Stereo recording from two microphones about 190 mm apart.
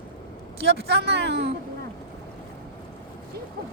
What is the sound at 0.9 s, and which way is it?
Speech, 60° right (ahead or behind).